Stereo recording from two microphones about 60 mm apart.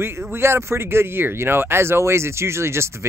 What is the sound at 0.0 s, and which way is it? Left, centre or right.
Speech, right.